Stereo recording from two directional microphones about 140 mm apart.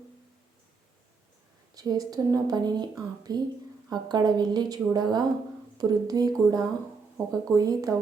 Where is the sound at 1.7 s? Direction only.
25° right (ahead or behind).